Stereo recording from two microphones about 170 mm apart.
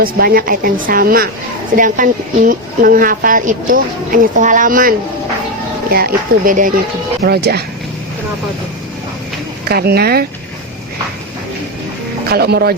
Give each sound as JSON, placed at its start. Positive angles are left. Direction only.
{"t": 0.0, "sound": "a woman's voice", "side_deg": -60}
{"t": 7.2, "sound": "speech", "side_deg": -70}
{"t": 9.6, "sound": "a woman's voice", "side_deg": -65}
{"t": 12.3, "sound": "speech", "side_deg": -70}